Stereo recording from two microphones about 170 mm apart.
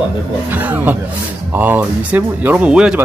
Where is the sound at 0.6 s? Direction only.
10° right (ahead or behind).